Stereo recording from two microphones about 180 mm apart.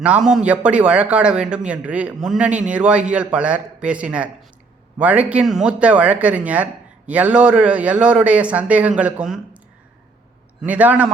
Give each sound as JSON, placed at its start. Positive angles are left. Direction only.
{"t": 0.0, "sound": "a man's voice", "side_deg": -5}
{"t": 10.6, "sound": "a man's voice", "side_deg": -10}